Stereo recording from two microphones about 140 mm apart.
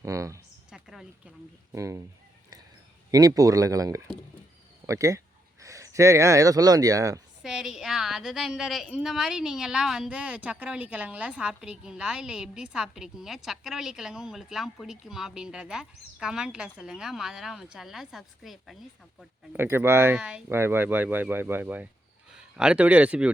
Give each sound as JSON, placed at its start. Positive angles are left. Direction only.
{"t": 0.0, "sound": "a sound", "side_deg": -20}
{"t": 0.7, "sound": "a sound", "side_deg": -5}
{"t": 1.7, "sound": "speech", "side_deg": -20}
{"t": 3.1, "sound": "speech", "side_deg": -25}
{"t": 7.4, "sound": "a woman's voice", "side_deg": -5}
{"t": 19.5, "sound": "speech", "side_deg": -15}